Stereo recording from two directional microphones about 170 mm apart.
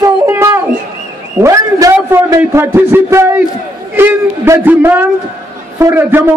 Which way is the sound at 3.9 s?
15° right (ahead or behind).